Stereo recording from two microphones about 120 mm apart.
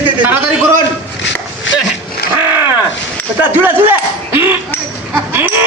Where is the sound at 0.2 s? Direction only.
15° right (ahead or behind).